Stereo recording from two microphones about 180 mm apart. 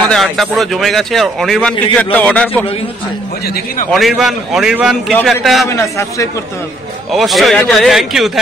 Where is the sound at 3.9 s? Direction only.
Centre (ahead or behind).